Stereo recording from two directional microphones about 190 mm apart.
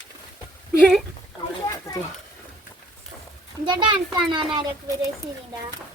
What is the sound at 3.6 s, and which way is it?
A child's voice, 25° right (ahead or behind).